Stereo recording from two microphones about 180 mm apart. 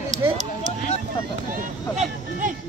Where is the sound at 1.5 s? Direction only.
45° right (ahead or behind).